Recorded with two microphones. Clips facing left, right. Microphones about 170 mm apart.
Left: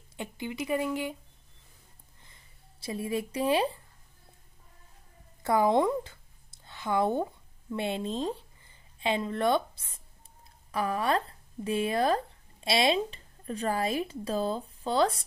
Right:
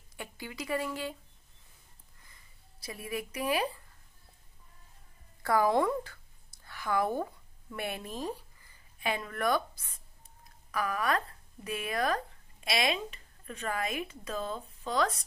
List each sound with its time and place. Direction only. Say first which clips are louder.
0.1 s speech: left 6 dB; 20° left (ahead or behind)
2.8 s speech: left 6 dB; 25° left (ahead or behind)
5.4 s a sound: left 2 dB; 20° left (ahead or behind)
7.7 s speech: left 6 dB; 25° left (ahead or behind)